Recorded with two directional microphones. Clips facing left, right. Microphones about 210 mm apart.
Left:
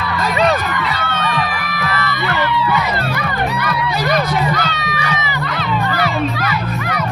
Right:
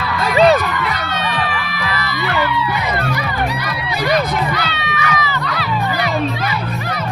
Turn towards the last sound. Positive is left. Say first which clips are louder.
# right 1 dB
turn(degrees=35)  # may be behind; listen again after turning